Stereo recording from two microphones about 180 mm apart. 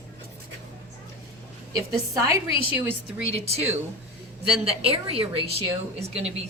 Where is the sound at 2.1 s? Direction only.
15° right (ahead or behind).